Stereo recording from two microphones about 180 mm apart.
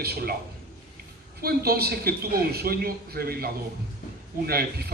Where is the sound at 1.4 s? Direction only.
55° right (ahead or behind).